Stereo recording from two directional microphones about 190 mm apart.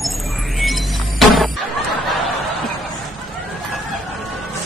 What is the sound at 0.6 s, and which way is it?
Music, centre (ahead or behind).